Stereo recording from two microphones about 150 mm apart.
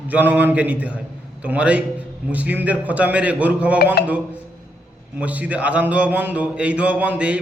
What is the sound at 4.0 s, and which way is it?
Speech, 90° left.